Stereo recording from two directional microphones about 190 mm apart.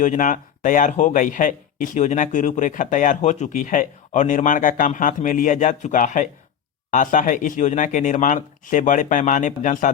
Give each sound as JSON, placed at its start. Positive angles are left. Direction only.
{"t": 0.0, "sound": "a man's voice", "side_deg": 40}